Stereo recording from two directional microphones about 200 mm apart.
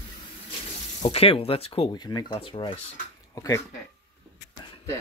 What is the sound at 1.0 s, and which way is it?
Speech, 30° left (ahead or behind).